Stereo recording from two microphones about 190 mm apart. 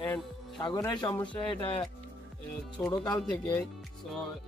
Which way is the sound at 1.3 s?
30° left (ahead or behind).